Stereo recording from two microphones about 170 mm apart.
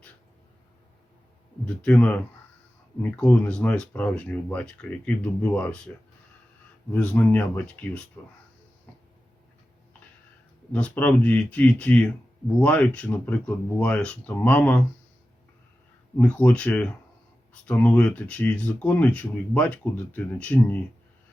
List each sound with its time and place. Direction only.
1.6 s speech: 5° left (ahead or behind)
6.9 s speech: 10° left (ahead or behind)
10.7 s speech: 5° left (ahead or behind)
16.1 s speech: 5° left (ahead or behind)